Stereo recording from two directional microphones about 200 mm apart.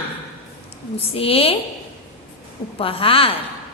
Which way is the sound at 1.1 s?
30° left (ahead or behind).